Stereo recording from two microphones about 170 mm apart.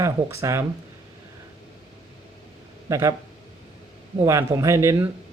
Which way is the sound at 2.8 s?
20° right (ahead or behind).